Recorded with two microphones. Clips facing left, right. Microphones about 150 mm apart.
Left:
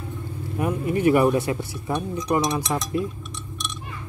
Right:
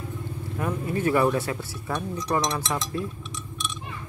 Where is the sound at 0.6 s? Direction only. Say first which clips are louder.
Left 4 dB; 15° left (ahead or behind).